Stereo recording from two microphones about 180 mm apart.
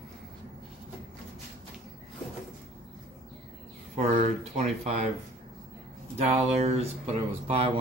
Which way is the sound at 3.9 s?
40° right (ahead or behind).